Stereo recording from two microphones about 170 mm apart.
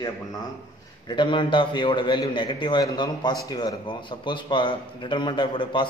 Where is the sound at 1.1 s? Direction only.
30° left (ahead or behind).